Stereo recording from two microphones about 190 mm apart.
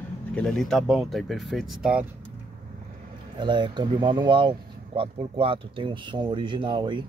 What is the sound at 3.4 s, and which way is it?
Speech, 25° right (ahead or behind).